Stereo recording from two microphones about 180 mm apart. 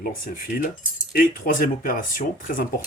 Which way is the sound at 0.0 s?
50° left (ahead or behind).